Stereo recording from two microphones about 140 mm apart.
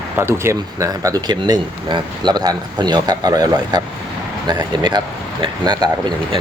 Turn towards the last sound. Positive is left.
turn(degrees=-30)  # may be behind; listen again after turning